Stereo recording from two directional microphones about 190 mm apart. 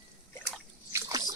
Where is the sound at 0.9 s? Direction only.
20° right (ahead or behind).